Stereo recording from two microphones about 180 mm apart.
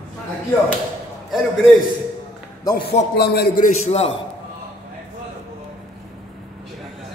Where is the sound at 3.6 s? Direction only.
35° left (ahead or behind).